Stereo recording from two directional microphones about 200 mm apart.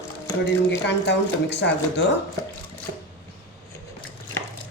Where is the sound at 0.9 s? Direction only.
60° left (ahead or behind).